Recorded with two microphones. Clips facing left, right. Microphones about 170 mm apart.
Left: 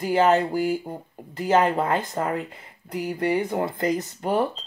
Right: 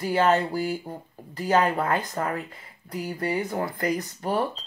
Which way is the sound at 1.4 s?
20° left (ahead or behind).